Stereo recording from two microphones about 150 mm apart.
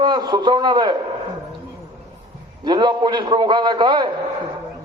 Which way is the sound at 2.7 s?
30° right (ahead or behind).